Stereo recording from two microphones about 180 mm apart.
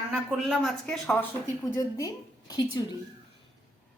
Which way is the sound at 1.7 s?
20° left (ahead or behind).